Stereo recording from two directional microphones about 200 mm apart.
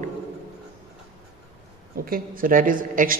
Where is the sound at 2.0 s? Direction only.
45° right (ahead or behind).